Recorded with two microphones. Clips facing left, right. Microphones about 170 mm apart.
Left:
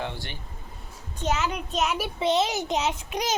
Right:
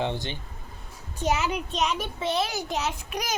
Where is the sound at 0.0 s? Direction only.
20° right (ahead or behind); by 2.0 s 5° left (ahead or behind).